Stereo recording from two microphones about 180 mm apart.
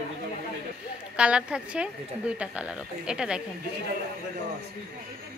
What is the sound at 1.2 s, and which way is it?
A woman's voice, 5° right (ahead or behind).